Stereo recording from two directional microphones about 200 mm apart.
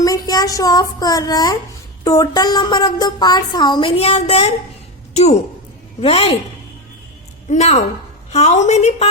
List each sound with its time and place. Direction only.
0.0 s a child's voice: 20° left (ahead or behind)
7.4 s a woman's voice: 35° left (ahead or behind)